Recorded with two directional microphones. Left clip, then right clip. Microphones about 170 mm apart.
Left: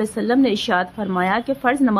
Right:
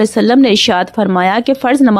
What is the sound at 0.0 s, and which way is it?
A woman's voice, 50° right (ahead or behind).